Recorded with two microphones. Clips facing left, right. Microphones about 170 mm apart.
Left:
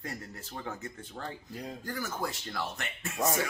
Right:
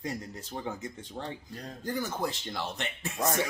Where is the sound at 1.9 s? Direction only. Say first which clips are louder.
Right 5 dB; 20° right (ahead or behind).